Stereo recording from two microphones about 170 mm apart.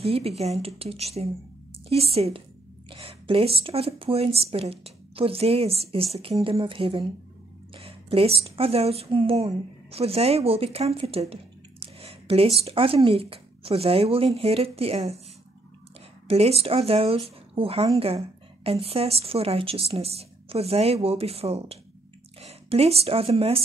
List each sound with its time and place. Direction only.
0.0 s a woman's voice: 35° right (ahead or behind)
16.3 s a woman's voice: 35° right (ahead or behind)